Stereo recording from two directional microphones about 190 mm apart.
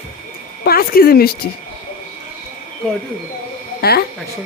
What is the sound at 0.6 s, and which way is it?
Speech, 50° left (ahead or behind).